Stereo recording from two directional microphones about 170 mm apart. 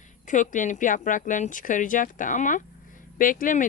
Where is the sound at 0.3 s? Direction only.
50° left (ahead or behind).